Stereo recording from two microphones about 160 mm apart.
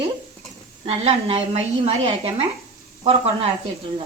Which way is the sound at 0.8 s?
40° right (ahead or behind).